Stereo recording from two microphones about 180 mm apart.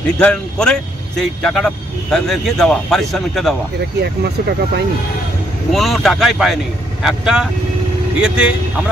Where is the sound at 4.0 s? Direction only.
65° right (ahead or behind).